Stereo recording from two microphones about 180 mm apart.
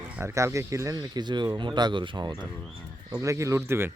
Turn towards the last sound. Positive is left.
turn(degrees=-15)  # may be behind; listen again after turning